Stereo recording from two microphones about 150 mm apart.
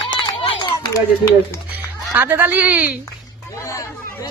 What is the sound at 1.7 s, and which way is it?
Speech, 15° right (ahead or behind).